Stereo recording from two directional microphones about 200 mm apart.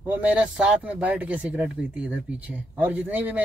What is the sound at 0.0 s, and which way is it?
Speech, 10° right (ahead or behind).